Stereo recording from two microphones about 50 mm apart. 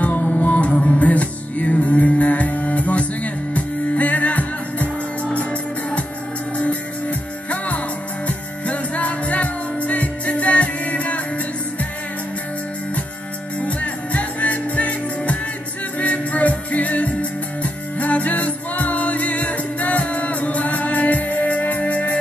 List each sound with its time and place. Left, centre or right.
0.4 s music: left
8.3 s music: left
13.6 s music: left